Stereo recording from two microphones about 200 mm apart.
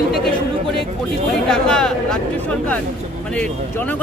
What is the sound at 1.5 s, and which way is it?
Speech, 5° left (ahead or behind).